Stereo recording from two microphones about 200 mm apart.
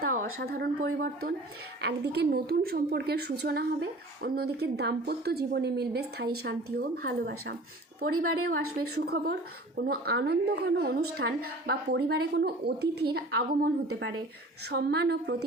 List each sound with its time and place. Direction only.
0.0 s a sound: 45° right (ahead or behind)
0.3 s a woman's voice: 50° right (ahead or behind)
8.5 s a woman's voice: 90° right
9.0 s a woman's voice: 50° right (ahead or behind)
13.8 s a woman's voice: 90° right
14.7 s speech: 55° right (ahead or behind)